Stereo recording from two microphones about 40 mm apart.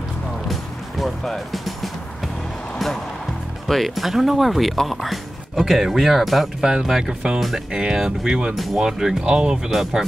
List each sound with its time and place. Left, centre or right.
0.5 s music: centre
3.6 s speech: centre
6.6 s speech: centre
9.7 s speech: centre